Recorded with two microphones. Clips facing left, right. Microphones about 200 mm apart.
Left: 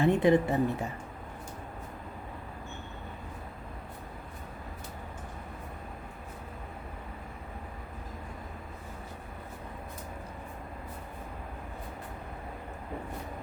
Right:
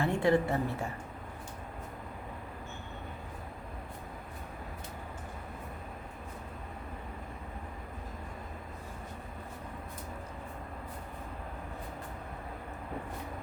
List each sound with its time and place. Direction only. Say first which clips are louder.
0.0 s a woman's voice: left 4 dB; 20° left (ahead or behind)